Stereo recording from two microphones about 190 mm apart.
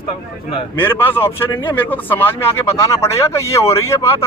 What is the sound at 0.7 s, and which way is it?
Speech, 10° left (ahead or behind).